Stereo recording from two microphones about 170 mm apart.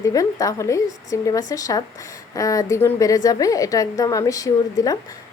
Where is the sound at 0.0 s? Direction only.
20° left (ahead or behind).